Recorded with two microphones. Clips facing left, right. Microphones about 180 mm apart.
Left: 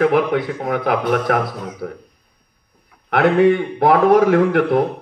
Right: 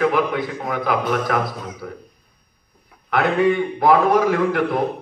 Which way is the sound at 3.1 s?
60° left (ahead or behind).